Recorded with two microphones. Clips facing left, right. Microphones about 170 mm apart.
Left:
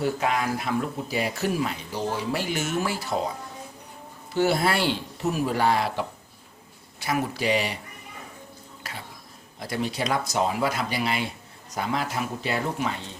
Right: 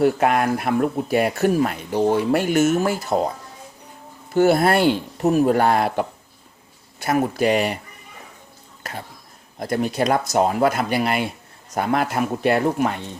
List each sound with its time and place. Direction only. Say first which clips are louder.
0.0 s speech: right 8 dB; 60° right (ahead or behind)
4.4 s speech: right 7 dB; 55° right (ahead or behind)
8.8 s a sound: right 6 dB; 50° right (ahead or behind)
9.6 s speech: right 7 dB; 50° right (ahead or behind)